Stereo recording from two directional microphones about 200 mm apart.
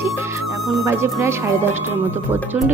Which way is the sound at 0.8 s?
10° right (ahead or behind).